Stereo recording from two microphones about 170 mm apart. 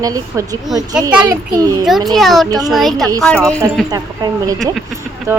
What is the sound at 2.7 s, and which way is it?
Speech, centre (ahead or behind).